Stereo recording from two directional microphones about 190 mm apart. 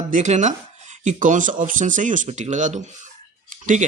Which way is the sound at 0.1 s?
40° right (ahead or behind).